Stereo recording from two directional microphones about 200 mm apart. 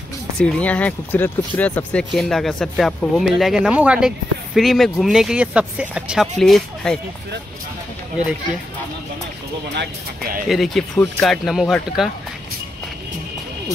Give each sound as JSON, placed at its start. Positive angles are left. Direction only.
{"t": 0.4, "sound": "speech", "side_deg": 5}
{"t": 9.8, "sound": "speech", "side_deg": -50}
{"t": 10.5, "sound": "speech", "side_deg": 0}